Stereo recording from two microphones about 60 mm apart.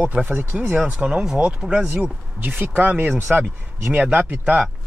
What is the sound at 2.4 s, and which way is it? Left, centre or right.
Speech, right.